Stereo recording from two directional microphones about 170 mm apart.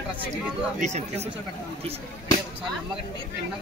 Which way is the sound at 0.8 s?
40° right (ahead or behind).